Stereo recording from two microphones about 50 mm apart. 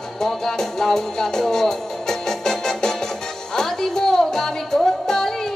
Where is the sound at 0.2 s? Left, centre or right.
Centre.